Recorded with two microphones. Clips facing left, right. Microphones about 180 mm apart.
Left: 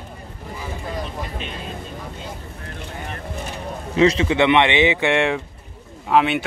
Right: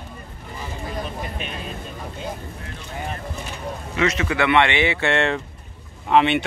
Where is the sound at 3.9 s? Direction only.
30° left (ahead or behind); by 5.4 s 15° left (ahead or behind).